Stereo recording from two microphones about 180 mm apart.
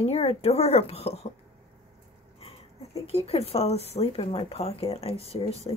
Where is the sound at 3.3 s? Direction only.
35° left (ahead or behind).